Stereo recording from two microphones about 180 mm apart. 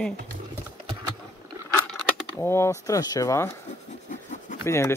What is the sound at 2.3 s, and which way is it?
Speech, 15° left (ahead or behind).